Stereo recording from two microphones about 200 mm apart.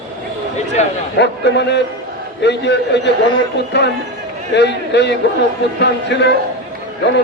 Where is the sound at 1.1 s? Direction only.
60° left (ahead or behind).